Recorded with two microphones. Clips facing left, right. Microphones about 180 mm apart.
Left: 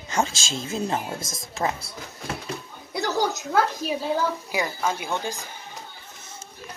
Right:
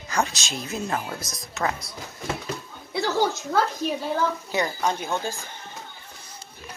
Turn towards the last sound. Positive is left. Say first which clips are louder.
# even
turn(degrees=15)  # may be behind; listen again after turning